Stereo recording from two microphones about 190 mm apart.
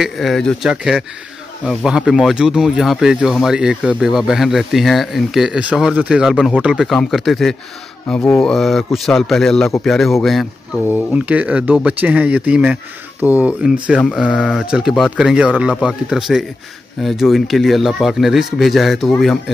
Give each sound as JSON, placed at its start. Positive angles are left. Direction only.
{"t": 0.0, "sound": "speech", "side_deg": 0}